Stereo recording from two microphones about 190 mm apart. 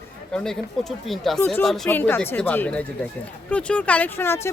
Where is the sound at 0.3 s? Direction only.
Centre (ahead or behind).